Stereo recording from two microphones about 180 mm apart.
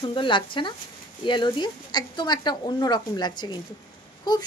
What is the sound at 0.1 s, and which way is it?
Speech, 25° left (ahead or behind).